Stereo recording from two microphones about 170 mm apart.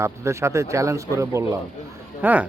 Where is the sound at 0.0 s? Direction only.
15° right (ahead or behind).